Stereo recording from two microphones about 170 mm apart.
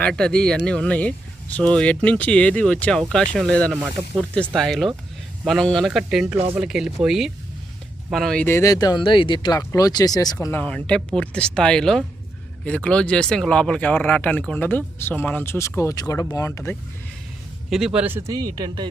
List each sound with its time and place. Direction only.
0.0 s speech: 5° left (ahead or behind); by 10.3 s 20° left (ahead or behind)
10.4 s speech: 10° left (ahead or behind)
17.7 s speech: centre (ahead or behind); by 18.9 s 25° right (ahead or behind)